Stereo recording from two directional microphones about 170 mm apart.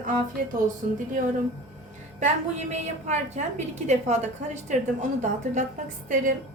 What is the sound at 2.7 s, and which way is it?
A woman's voice, 45° right (ahead or behind).